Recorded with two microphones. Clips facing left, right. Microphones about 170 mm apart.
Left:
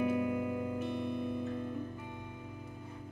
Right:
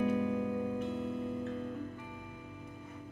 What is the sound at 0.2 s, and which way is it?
Music, 15° left (ahead or behind).